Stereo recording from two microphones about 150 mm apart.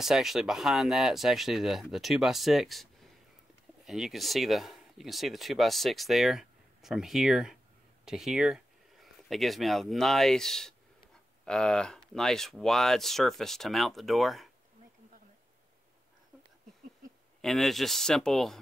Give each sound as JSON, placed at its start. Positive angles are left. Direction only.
{"t": 0.0, "sound": "speech", "side_deg": 0}
{"t": 17.4, "sound": "speech", "side_deg": 0}